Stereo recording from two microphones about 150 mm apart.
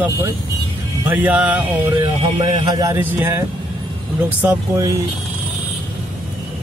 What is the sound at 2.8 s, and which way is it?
Speech, 20° right (ahead or behind).